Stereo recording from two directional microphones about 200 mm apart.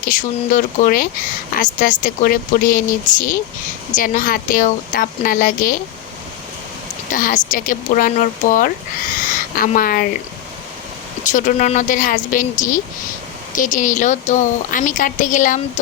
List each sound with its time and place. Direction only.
0.0 s a woman's voice: 40° left (ahead or behind)
7.1 s a woman's voice: 45° left (ahead or behind)
11.2 s a woman's voice: 40° left (ahead or behind)